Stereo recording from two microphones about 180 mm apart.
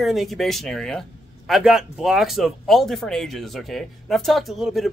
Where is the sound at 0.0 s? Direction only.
Centre (ahead or behind).